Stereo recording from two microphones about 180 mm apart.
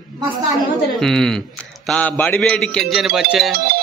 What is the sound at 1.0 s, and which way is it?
A man's voice, 5° left (ahead or behind).